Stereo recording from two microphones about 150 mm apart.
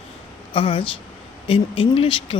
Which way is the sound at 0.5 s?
35° left (ahead or behind).